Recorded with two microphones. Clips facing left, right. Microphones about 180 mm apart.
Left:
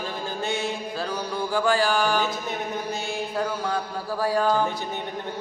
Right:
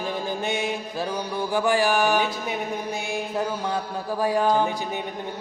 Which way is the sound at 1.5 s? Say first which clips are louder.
Right 1 dB; 20° right (ahead or behind).